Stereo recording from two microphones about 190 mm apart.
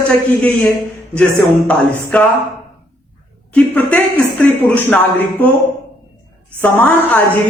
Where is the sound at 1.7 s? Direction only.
5° left (ahead or behind).